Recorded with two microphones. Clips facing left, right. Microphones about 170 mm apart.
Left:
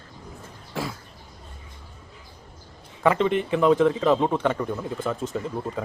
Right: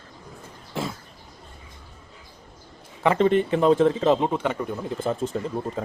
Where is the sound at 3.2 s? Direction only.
40° right (ahead or behind).